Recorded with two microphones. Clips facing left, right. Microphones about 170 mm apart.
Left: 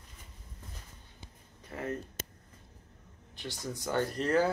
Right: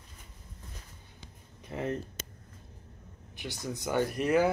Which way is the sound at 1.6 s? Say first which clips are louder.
Right 3 dB; 20° right (ahead or behind).